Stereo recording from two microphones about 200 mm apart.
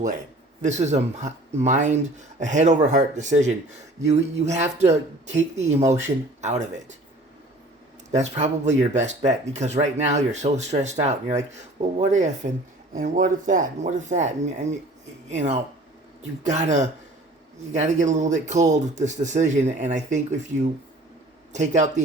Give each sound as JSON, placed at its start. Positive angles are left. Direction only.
{"t": 0.6, "sound": "speech", "side_deg": -35}
{"t": 8.1, "sound": "speech", "side_deg": -35}